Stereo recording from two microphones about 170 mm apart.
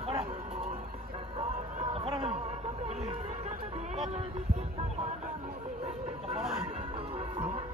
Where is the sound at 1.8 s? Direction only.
30° right (ahead or behind).